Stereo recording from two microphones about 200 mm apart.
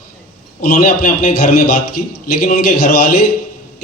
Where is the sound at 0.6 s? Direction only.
40° left (ahead or behind).